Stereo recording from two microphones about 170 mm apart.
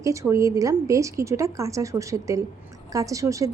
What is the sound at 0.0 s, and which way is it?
A woman's voice, 20° right (ahead or behind).